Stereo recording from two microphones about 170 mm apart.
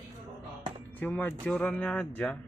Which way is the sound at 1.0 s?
10° left (ahead or behind).